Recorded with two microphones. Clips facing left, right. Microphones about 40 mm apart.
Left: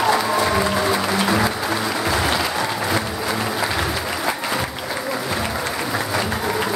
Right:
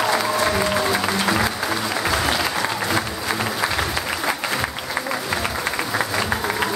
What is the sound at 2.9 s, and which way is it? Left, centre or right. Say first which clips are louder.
Applause: left 1 dB; centre.